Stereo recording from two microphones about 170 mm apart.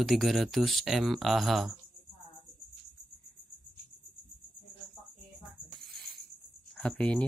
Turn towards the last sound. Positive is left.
turn(degrees=10)  # may be behind; listen again after turning